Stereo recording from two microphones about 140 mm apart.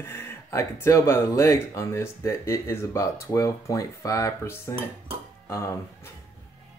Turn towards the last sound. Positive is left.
turn(degrees=20)  # may be behind; listen again after turning